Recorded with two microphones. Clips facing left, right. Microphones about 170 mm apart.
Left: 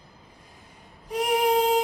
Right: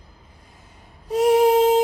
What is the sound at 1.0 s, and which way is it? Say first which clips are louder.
Music: right 8 dB; 25° right (ahead or behind).